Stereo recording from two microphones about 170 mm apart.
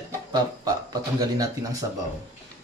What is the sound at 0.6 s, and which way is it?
Speech, 20° right (ahead or behind).